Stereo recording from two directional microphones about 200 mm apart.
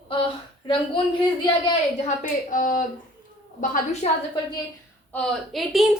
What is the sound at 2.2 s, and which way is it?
A woman's voice, 40° left (ahead or behind).